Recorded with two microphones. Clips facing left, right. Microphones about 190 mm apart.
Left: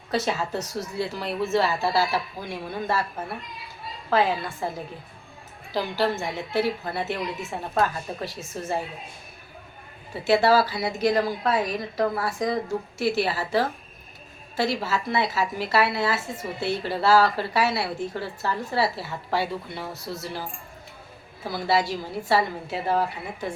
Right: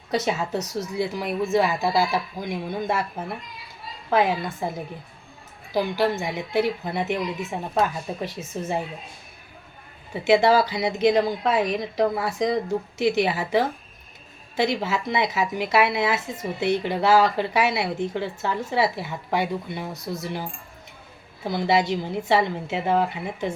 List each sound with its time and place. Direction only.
0.1 s speech: 15° right (ahead or behind)
4.1 s speech: 20° right (ahead or behind)
5.7 s speech: 15° right (ahead or behind)
10.2 s speech: 20° right (ahead or behind)